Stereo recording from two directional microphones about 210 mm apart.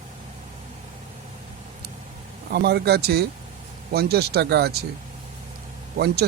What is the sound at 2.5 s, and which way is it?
Speech, 50° right (ahead or behind).